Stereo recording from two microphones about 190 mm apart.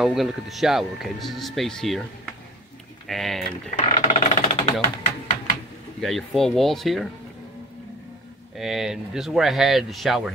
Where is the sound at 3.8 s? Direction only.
35° left (ahead or behind).